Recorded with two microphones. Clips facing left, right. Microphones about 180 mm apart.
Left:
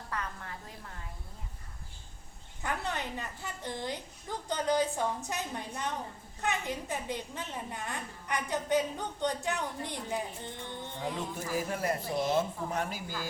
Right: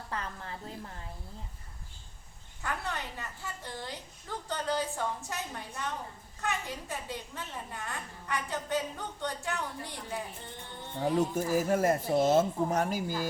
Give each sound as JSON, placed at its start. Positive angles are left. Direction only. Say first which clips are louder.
{"t": 0.1, "sound": "a sound", "louder": "even", "side_deg": -30}
{"t": 2.6, "sound": "a child's voice", "louder": "left 1 dB", "side_deg": 20}
{"t": 11.0, "sound": "speech", "louder": "right 9 dB", "side_deg": -40}